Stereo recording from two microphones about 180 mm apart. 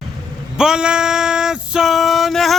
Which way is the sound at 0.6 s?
5° right (ahead or behind).